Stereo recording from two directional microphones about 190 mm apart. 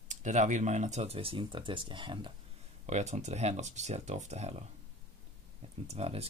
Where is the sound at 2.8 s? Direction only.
35° right (ahead or behind).